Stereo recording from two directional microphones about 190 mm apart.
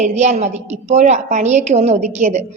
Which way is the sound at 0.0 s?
35° right (ahead or behind).